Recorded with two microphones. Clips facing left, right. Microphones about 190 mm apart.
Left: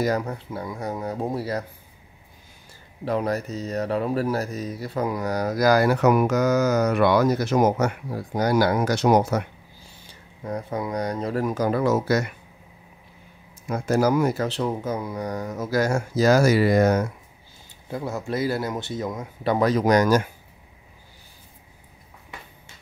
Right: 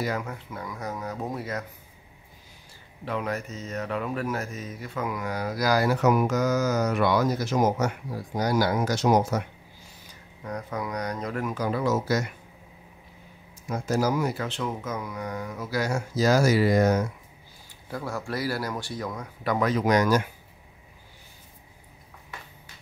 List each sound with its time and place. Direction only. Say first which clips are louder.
0.0 s speech: left 6 dB; 35° left (ahead or behind)
3.1 s speech: left 6 dB; 35° left (ahead or behind); by 9.4 s 65° left (ahead or behind)
9.8 s speech: left 1 dB; 30° left (ahead or behind); by 12.3 s 60° left (ahead or behind)
13.7 s speech: left 4 dB; 60° left (ahead or behind)
17.8 s speech: left 3 dB; 20° left (ahead or behind); by 20.2 s 40° left (ahead or behind)